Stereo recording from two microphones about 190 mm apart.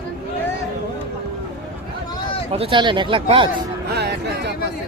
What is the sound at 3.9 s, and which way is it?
Speech, 60° right (ahead or behind).